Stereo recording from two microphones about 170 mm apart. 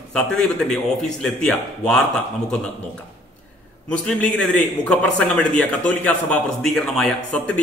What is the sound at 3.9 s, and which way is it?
A man's voice, 5° left (ahead or behind).